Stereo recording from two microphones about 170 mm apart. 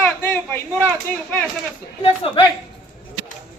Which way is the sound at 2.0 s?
30° left (ahead or behind).